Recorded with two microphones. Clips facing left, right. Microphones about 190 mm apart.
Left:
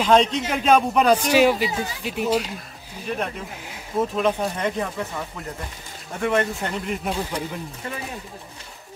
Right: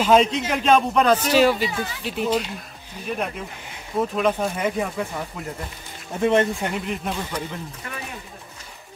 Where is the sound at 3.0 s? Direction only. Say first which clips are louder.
Even; 5° right (ahead or behind).